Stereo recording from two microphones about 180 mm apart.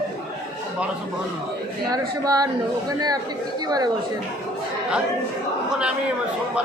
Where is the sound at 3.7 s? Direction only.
20° right (ahead or behind).